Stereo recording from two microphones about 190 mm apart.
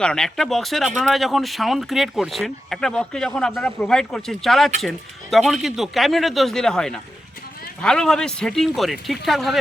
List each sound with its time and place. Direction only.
0.0 s speech: 5° left (ahead or behind)